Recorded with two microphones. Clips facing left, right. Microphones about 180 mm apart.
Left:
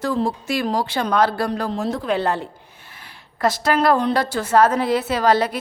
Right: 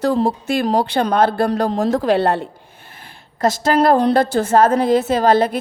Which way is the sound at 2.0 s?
65° right (ahead or behind).